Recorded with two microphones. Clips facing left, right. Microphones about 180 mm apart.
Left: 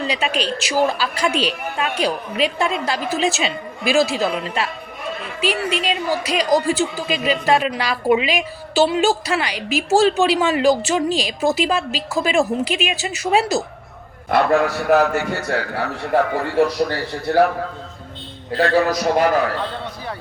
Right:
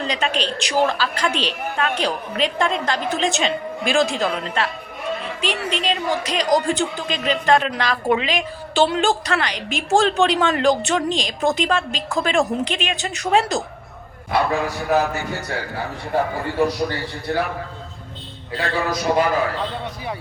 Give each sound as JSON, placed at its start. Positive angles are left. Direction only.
{"t": 0.0, "sound": "speech", "side_deg": 10}
{"t": 14.3, "sound": "a man's voice", "side_deg": 60}
{"t": 18.5, "sound": "a man's voice", "side_deg": 45}
{"t": 18.8, "sound": "a man's voice", "side_deg": 65}